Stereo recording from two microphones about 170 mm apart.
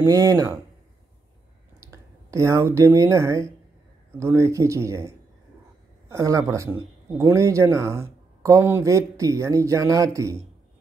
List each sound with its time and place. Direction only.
0.0 s speech: 20° right (ahead or behind)
1.8 s speech: 20° right (ahead or behind)